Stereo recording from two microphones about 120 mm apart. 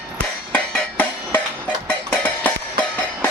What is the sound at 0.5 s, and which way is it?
Music, 15° left (ahead or behind).